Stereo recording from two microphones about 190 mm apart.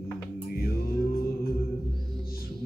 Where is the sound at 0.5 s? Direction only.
55° left (ahead or behind).